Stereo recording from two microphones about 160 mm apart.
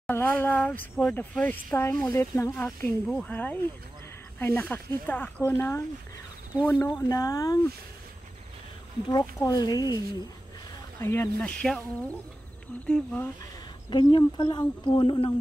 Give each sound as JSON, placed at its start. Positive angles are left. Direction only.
{"t": 0.0, "sound": "speech", "side_deg": 10}
{"t": 9.1, "sound": "speech", "side_deg": 20}
{"t": 13.8, "sound": "speech", "side_deg": 30}